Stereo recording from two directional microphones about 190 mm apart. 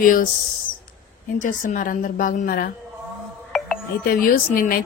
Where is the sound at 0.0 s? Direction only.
45° left (ahead or behind).